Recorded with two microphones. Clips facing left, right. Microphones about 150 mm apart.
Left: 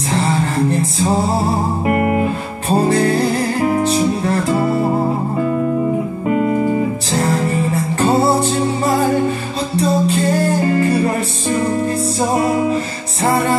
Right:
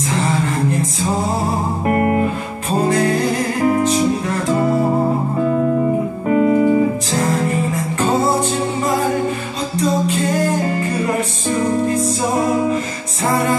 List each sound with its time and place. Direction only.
0.1 s music: 35° left (ahead or behind)
2.0 s music: 10° left (ahead or behind)
2.7 s music: 35° left (ahead or behind)
4.5 s music: 10° left (ahead or behind)
7.1 s music: 35° left (ahead or behind)
13.3 s music: 30° left (ahead or behind)